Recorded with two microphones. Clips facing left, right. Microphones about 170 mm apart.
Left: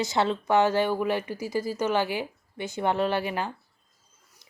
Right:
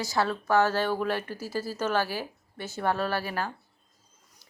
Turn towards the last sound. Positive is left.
turn(degrees=20)  # may be behind; listen again after turning